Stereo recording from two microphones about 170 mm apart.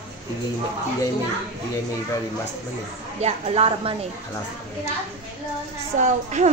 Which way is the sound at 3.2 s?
35° right (ahead or behind).